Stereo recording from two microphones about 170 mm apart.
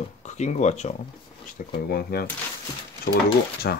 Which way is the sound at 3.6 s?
75° left (ahead or behind).